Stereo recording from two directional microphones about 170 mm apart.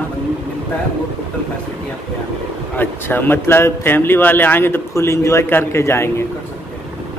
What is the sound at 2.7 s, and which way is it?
Speech, 10° left (ahead or behind).